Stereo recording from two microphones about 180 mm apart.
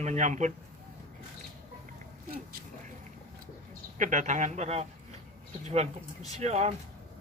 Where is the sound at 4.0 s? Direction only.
45° right (ahead or behind).